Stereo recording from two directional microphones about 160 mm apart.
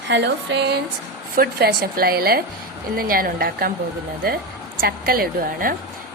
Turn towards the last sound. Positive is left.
turn(degrees=-65)  # may be behind; listen again after turning